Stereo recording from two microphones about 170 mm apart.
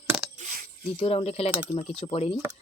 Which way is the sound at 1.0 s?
35° left (ahead or behind).